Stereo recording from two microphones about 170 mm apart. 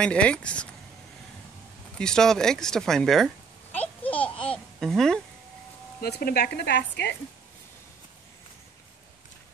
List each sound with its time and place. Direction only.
0.0 s speech: 5° left (ahead or behind)
2.0 s speech: 5° left (ahead or behind)
3.7 s a sound: 10° left (ahead or behind)
5.9 s speech: 65° left (ahead or behind); by 7.2 s 85° left